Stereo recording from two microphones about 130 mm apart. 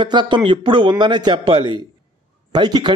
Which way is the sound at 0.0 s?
35° right (ahead or behind).